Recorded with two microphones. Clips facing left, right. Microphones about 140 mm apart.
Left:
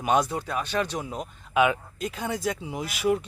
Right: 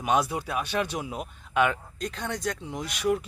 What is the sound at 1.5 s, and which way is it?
Speech, 5° left (ahead or behind).